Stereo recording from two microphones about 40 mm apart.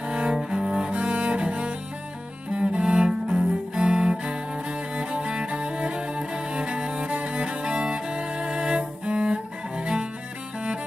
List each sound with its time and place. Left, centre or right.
0.3 s cello: centre; by 2.8 s right
2.9 s music: centre
4.1 s music: right
9.0 s cello: right